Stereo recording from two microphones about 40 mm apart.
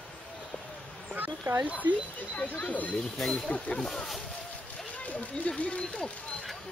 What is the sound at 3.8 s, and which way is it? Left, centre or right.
Speech, centre.